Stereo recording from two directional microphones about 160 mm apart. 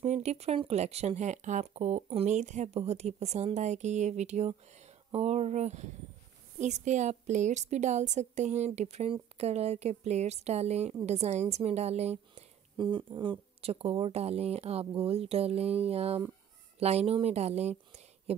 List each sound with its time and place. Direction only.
0.0 s speech: 45° right (ahead or behind)
12.7 s speech: 30° right (ahead or behind)